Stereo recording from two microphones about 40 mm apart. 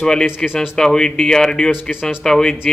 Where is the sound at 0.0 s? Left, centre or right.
Centre.